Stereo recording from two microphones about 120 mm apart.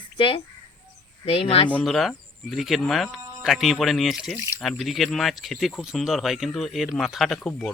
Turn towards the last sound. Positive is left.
turn(degrees=5)  # may be behind; listen again after turning